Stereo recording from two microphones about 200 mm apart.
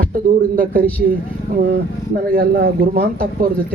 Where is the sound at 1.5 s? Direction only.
45° right (ahead or behind).